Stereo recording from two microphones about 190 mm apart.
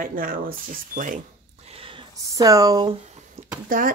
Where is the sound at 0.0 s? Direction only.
50° right (ahead or behind).